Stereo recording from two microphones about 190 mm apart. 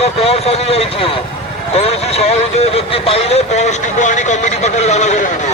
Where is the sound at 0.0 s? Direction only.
30° left (ahead or behind).